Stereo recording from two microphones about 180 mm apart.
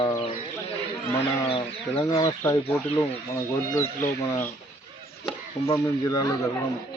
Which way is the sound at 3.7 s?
15° left (ahead or behind).